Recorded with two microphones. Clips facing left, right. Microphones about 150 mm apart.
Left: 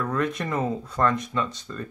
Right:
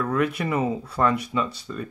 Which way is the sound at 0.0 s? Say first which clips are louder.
Right 2 dB; 10° right (ahead or behind).